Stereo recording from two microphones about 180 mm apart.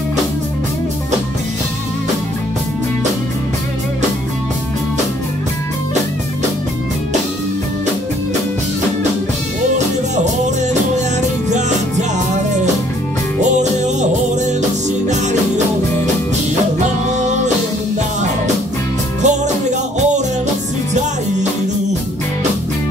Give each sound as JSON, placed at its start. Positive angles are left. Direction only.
{"t": 10.7, "sound": "music", "side_deg": -40}
{"t": 13.6, "sound": "music", "side_deg": -40}
{"t": 19.2, "sound": "music", "side_deg": -40}